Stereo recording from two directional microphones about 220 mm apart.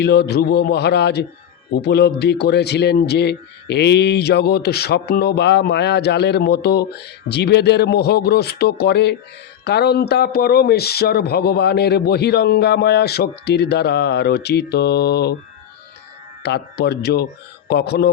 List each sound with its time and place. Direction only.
0.0 s a man's voice: 50° left (ahead or behind)
16.4 s a man's voice: 50° left (ahead or behind)